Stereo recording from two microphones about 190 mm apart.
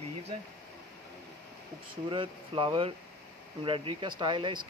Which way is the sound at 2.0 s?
25° right (ahead or behind).